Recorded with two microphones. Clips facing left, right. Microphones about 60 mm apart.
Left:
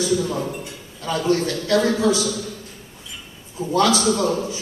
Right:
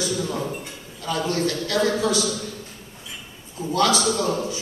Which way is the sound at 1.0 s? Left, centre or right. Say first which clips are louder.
Left 3 dB; centre.